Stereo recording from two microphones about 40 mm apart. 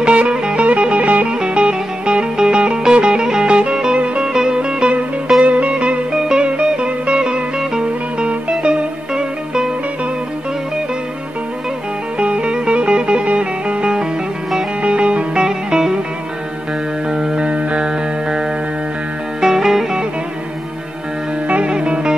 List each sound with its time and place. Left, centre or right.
0.0 s music: right
12.2 s music: right
17.1 s music: right
19.4 s music: centre
21.5 s music: right
21.7 s music: right